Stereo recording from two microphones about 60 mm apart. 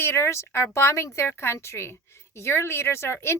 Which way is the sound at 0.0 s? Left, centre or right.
Left.